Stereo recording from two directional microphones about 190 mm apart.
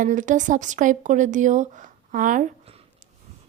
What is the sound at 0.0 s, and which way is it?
Speech, 40° right (ahead or behind).